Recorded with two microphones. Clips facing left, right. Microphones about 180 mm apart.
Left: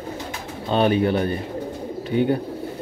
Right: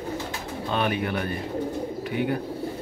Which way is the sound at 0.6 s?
30° left (ahead or behind).